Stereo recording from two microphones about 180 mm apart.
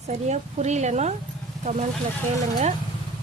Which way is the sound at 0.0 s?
40° right (ahead or behind).